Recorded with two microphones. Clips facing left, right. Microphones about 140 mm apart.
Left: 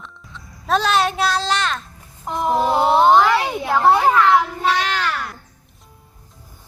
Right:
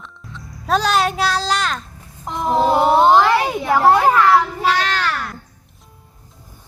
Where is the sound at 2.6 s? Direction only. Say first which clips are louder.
Right 4 dB; 25° right (ahead or behind).